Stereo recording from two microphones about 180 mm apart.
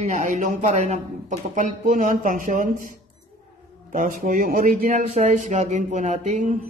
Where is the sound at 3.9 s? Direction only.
50° right (ahead or behind).